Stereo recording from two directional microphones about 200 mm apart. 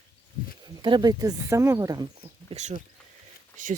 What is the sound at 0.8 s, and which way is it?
Speech, 20° right (ahead or behind).